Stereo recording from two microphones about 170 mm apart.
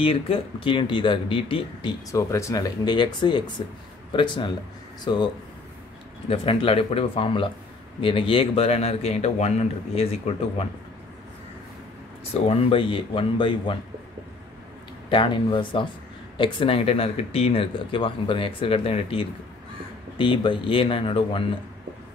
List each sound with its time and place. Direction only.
0.0 s speech: 35° left (ahead or behind)
6.2 s speech: 35° left (ahead or behind)
12.4 s speech: 35° left (ahead or behind)
15.0 s speech: 30° left (ahead or behind)